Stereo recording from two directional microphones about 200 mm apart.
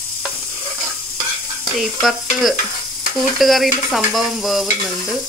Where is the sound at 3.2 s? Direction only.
Centre (ahead or behind).